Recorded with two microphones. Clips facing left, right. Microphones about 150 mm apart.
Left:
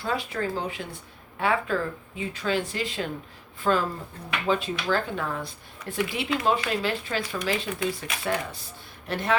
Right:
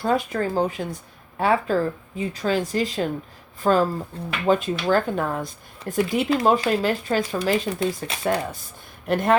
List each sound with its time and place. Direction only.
0.0 s speech: 45° right (ahead or behind)